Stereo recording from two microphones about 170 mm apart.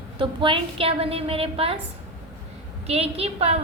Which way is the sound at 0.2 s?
30° right (ahead or behind).